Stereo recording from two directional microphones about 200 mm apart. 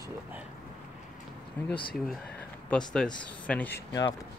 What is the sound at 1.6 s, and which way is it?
Speech, 10° left (ahead or behind).